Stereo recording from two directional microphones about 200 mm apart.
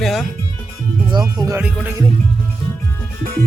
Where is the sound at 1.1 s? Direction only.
20° right (ahead or behind).